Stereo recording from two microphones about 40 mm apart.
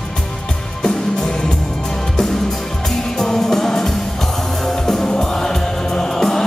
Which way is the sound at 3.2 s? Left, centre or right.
Centre.